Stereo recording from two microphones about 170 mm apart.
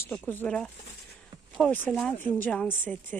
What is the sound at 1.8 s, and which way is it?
Speech, 5° left (ahead or behind).